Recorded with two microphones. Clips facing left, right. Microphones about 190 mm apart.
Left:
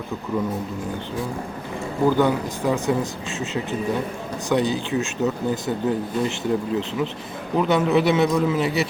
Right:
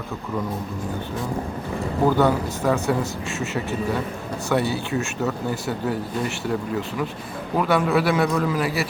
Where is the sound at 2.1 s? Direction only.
15° left (ahead or behind).